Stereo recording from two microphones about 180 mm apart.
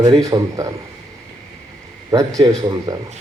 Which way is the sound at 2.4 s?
20° right (ahead or behind).